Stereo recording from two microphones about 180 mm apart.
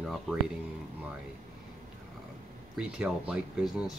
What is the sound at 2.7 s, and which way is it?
Speech, 5° right (ahead or behind).